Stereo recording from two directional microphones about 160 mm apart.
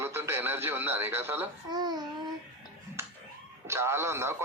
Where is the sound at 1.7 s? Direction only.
25° right (ahead or behind).